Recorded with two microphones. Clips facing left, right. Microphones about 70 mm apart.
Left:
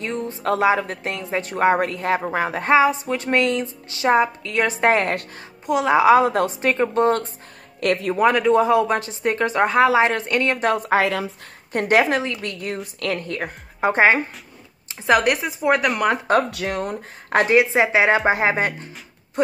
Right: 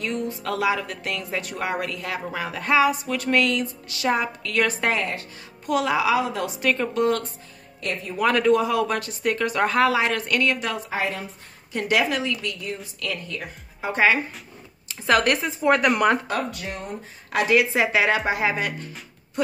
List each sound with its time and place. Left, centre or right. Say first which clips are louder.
0.0 s speech: left 2 dB; left
5.9 s speech: left 8 dB; left
6.6 s speech: left 2 dB; left
7.8 s speech: left 9 dB; left
8.5 s speech: left 4 dB; left
10.9 s speech: left 8 dB; left
11.7 s speech: left 5 dB; left
13.9 s speech: left 3 dB; left
14.9 s speech: left 2 dB; centre
15.8 s speech: right 1 dB; centre
16.3 s speech: left 8 dB; left
17.5 s speech: left 2 dB; left